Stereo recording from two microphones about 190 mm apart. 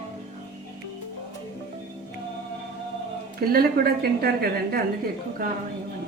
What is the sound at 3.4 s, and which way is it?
A woman's voice, 55° right (ahead or behind).